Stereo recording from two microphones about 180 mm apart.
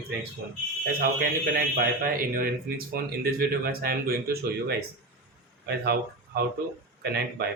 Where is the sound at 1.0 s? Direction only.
55° right (ahead or behind).